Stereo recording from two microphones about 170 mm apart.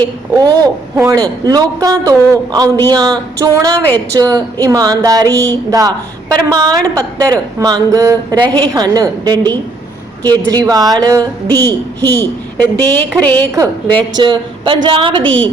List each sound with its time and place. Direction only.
0.0 s a woman's voice: 20° right (ahead or behind)
3.8 s a woman's voice: 10° left (ahead or behind)
4.2 s a woman's voice: 20° right (ahead or behind)
11.5 s a woman's voice: 10° left (ahead or behind)
13.6 s a woman's voice: 25° right (ahead or behind)